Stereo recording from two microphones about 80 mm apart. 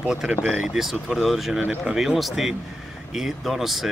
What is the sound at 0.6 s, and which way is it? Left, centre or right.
Speech, centre.